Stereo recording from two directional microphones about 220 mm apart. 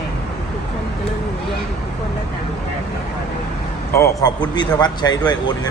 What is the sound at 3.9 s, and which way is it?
A man's voice, 15° left (ahead or behind).